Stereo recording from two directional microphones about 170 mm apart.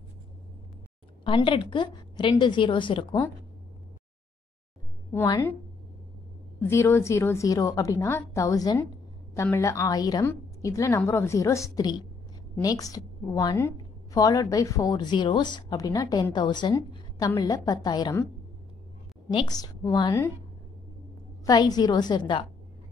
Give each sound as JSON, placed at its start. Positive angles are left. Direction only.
{"t": 1.2, "sound": "a woman's voice", "side_deg": 30}
{"t": 6.7, "sound": "a woman's voice", "side_deg": 15}
{"t": 19.3, "sound": "a woman's voice", "side_deg": 25}
{"t": 21.5, "sound": "a woman's voice", "side_deg": 25}